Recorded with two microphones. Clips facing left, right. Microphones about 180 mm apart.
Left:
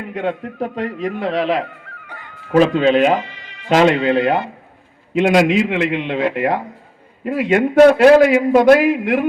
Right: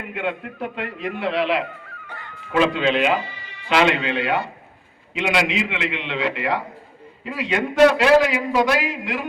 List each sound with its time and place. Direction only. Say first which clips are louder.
0.1 s a man's voice: left 5 dB; 40° left (ahead or behind); by 9.2 s 55° left (ahead or behind)